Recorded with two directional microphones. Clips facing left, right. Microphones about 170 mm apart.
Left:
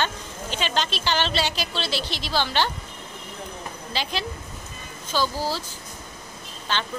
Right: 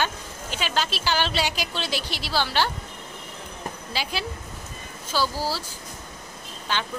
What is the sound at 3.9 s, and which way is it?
A woman's voice, 10° right (ahead or behind).